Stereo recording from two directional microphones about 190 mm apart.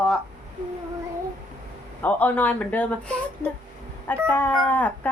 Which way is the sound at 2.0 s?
10° left (ahead or behind).